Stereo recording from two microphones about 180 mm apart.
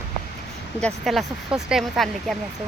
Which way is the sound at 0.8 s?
Centre (ahead or behind).